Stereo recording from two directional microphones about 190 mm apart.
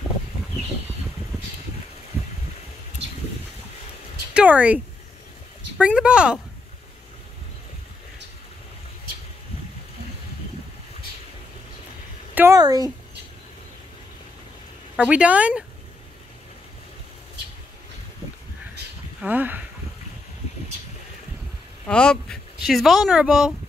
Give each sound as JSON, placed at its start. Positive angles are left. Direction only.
{"t": 4.3, "sound": "speech", "side_deg": -5}
{"t": 12.4, "sound": "speech", "side_deg": -15}
{"t": 15.0, "sound": "speech", "side_deg": -5}
{"t": 19.2, "sound": "speech", "side_deg": -10}
{"t": 21.8, "sound": "speech", "side_deg": 5}